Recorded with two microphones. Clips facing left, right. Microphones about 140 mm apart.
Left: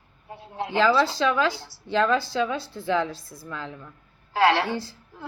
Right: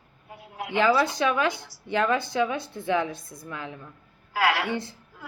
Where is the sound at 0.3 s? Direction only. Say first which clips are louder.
Left 5 dB; 30° left (ahead or behind).